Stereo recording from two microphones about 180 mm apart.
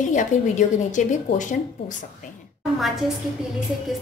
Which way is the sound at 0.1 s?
45° left (ahead or behind).